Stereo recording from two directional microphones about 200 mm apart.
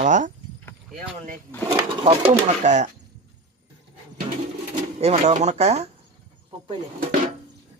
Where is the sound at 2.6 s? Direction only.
35° right (ahead or behind).